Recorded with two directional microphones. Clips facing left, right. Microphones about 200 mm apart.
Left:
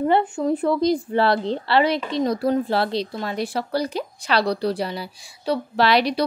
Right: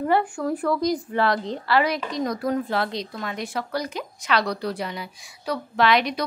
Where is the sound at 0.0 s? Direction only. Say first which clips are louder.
Left 3 dB; 20° left (ahead or behind).